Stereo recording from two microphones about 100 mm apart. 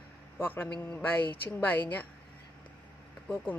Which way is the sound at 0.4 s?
20° left (ahead or behind).